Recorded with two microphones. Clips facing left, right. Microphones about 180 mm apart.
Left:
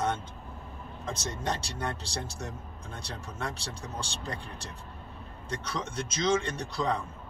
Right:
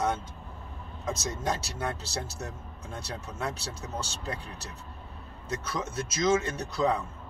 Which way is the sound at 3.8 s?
5° right (ahead or behind).